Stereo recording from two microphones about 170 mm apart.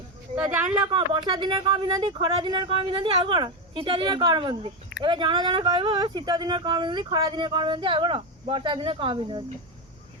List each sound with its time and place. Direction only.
0.7 s speech: 30° right (ahead or behind)